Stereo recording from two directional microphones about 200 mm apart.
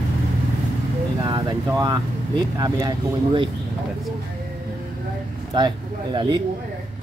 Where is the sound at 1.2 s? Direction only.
20° right (ahead or behind).